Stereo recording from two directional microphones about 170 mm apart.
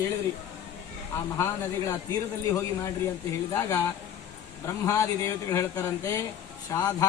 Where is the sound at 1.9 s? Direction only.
20° left (ahead or behind).